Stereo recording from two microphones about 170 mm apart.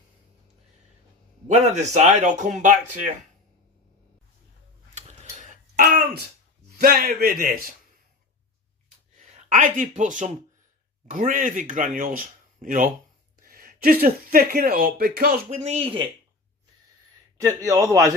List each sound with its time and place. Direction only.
1.5 s speech: 40° right (ahead or behind)
4.9 s tick-tock: 45° right (ahead or behind)
5.7 s a man's voice: 60° right (ahead or behind)
9.1 s speech: 45° right (ahead or behind)
15.4 s speech: 40° right (ahead or behind)
17.4 s a man's voice: 20° right (ahead or behind)